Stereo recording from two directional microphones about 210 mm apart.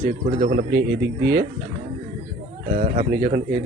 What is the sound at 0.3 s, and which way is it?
Speech, 35° right (ahead or behind).